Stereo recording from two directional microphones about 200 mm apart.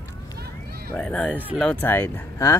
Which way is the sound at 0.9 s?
5° left (ahead or behind).